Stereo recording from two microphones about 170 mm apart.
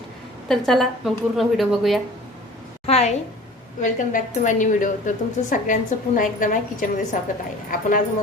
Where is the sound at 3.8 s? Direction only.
50° left (ahead or behind).